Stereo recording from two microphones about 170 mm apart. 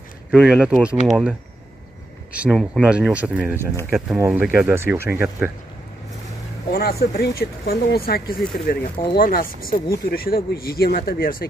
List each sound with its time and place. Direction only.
0.3 s speech: 5° right (ahead or behind)
2.3 s speech: 5° right (ahead or behind)
6.7 s speech: 65° left (ahead or behind)